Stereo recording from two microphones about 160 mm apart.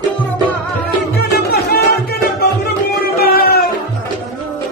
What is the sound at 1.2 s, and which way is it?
Music, 80° left.